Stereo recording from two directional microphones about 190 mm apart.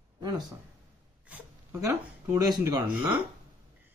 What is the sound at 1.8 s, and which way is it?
Speech, 15° right (ahead or behind).